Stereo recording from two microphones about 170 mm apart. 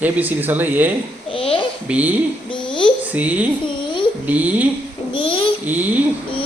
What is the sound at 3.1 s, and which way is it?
Speech, 10° right (ahead or behind).